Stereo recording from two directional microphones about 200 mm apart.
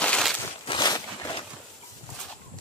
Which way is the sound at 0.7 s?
20° left (ahead or behind).